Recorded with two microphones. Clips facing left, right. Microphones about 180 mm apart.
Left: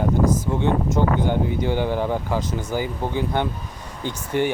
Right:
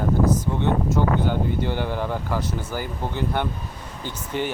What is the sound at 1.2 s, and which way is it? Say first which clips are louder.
Speech: left 2 dB; 15° left (ahead or behind).